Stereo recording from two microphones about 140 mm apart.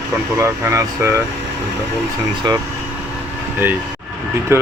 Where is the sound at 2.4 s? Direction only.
30° right (ahead or behind).